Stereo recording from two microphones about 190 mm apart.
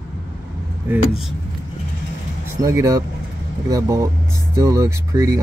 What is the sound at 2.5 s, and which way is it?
Speech, 15° right (ahead or behind).